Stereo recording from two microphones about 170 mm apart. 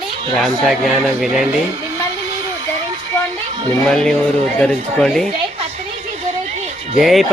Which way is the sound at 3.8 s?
5° left (ahead or behind).